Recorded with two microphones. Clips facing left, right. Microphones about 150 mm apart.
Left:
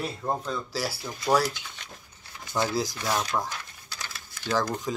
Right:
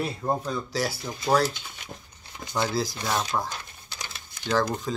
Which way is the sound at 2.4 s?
20° right (ahead or behind).